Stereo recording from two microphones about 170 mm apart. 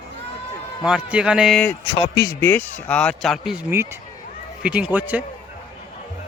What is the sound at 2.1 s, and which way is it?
Speech, 20° left (ahead or behind).